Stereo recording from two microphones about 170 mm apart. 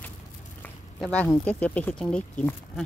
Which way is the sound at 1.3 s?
10° left (ahead or behind).